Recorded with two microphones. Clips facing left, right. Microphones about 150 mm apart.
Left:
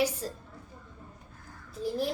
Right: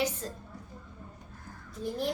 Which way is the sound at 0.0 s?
10° left (ahead or behind).